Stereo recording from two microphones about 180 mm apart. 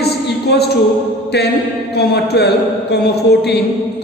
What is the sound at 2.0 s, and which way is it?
A man's voice, 65° left (ahead or behind).